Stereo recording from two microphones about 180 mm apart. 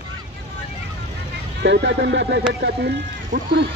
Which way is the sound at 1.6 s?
75° right (ahead or behind).